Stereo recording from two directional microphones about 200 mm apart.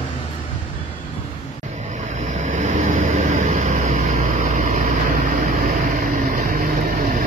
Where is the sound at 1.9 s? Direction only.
35° right (ahead or behind).